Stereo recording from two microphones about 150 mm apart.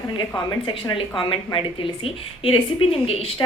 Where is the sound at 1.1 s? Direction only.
35° left (ahead or behind).